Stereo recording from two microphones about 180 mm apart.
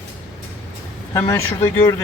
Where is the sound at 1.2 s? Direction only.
15° left (ahead or behind).